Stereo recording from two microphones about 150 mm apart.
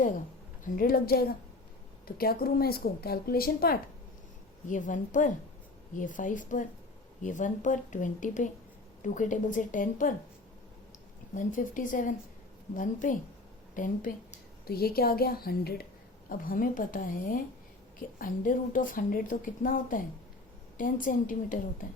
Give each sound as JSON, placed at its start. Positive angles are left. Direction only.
{"t": 0.6, "sound": "a woman's voice", "side_deg": 70}
{"t": 4.7, "sound": "a woman's voice", "side_deg": 60}
{"t": 11.3, "sound": "a woman's voice", "side_deg": 60}
{"t": 14.7, "sound": "a woman's voice", "side_deg": 90}
{"t": 16.3, "sound": "a woman's voice", "side_deg": 65}